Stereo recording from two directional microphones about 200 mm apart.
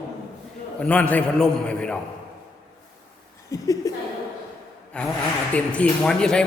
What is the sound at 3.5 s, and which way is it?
Speech, 15° left (ahead or behind).